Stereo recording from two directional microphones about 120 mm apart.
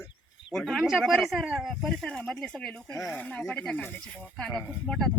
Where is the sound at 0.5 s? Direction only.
Centre (ahead or behind).